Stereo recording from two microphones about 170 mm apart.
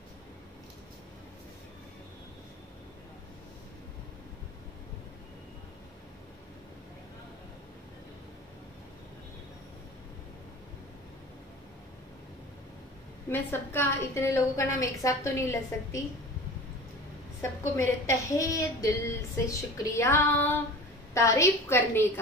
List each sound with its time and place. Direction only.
13.3 s a woman's voice: 10° left (ahead or behind)
17.4 s a woman's voice: 15° left (ahead or behind)